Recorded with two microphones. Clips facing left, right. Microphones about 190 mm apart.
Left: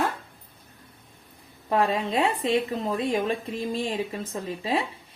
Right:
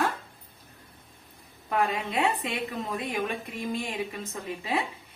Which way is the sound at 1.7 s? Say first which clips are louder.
Left 4 dB; 30° left (ahead or behind).